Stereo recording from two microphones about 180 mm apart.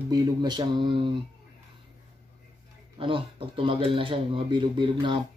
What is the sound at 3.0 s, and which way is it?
Speech, 30° right (ahead or behind).